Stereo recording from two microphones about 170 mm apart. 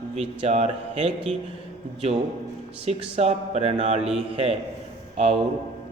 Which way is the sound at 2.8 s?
40° right (ahead or behind).